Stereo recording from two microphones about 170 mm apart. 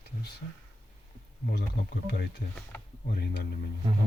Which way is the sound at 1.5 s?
75° left (ahead or behind).